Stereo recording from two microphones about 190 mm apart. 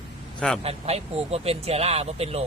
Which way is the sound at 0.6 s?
30° right (ahead or behind).